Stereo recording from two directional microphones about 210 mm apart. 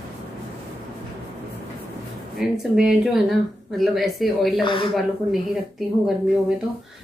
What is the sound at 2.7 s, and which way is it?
Speech, centre (ahead or behind).